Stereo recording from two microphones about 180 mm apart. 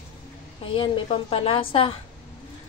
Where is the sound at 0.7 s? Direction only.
30° left (ahead or behind).